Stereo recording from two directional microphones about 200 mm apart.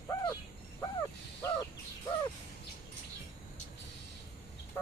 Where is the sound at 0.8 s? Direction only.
15° left (ahead or behind).